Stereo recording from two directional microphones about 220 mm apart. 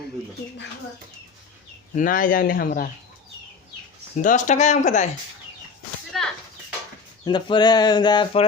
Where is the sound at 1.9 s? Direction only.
40° left (ahead or behind).